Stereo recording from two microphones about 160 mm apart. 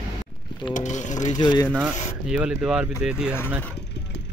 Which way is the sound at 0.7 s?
50° left (ahead or behind).